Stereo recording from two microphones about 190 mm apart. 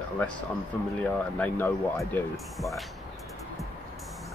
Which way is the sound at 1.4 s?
10° left (ahead or behind).